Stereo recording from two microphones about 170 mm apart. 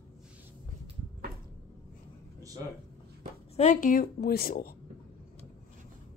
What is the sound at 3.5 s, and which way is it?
A woman's voice, 45° left (ahead or behind).